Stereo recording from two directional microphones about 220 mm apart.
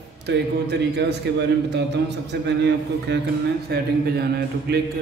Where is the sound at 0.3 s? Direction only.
50° right (ahead or behind).